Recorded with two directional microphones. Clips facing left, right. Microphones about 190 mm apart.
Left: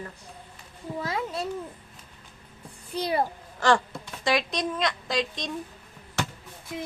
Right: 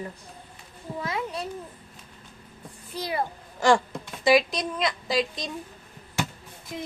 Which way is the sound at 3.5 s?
10° right (ahead or behind).